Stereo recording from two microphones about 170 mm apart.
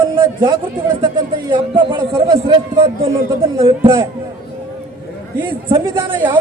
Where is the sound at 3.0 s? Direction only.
35° right (ahead or behind).